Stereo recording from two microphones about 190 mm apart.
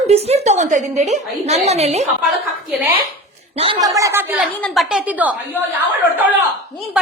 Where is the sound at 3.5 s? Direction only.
30° right (ahead or behind).